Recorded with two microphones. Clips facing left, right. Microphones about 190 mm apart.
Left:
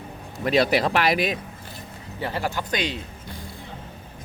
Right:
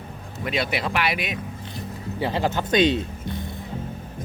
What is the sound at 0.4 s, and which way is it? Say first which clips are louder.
Speech: left 6 dB; 40° left (ahead or behind).